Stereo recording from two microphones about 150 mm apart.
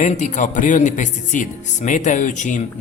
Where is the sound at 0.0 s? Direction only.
55° left (ahead or behind).